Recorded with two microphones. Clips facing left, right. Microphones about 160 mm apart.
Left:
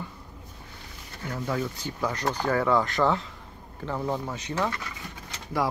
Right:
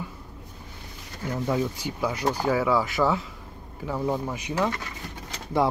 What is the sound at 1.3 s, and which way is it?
Speech, 15° right (ahead or behind).